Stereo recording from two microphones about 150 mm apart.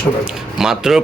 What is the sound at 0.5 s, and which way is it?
Speech, 5° right (ahead or behind).